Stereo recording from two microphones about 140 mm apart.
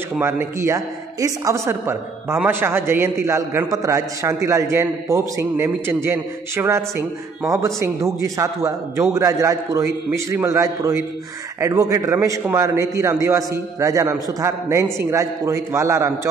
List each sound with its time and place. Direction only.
0.2 s a woman's voice: 20° right (ahead or behind)